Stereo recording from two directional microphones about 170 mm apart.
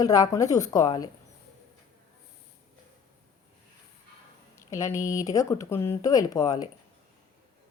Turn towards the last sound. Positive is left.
turn(degrees=20)  # may be behind; listen again after turning